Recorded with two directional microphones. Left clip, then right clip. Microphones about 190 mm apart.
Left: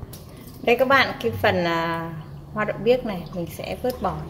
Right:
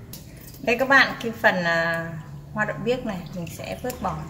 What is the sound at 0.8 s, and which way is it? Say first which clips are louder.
A woman's voice: right 4 dB; 35° left (ahead or behind).